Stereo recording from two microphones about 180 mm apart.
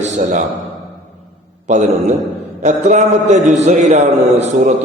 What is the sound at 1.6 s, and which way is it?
A man's voice, 40° right (ahead or behind).